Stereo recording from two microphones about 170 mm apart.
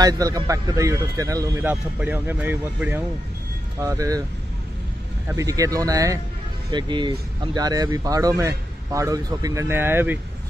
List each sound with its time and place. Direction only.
0.0 s speech: 20° right (ahead or behind)
3.8 s speech: 20° right (ahead or behind)
5.3 s speech: 20° right (ahead or behind)